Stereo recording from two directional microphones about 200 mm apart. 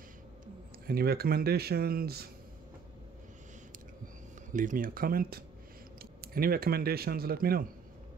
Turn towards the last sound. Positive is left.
turn(degrees=-50)  # may be behind; listen again after turning